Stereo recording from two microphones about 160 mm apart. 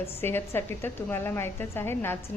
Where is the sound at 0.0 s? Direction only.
15° left (ahead or behind).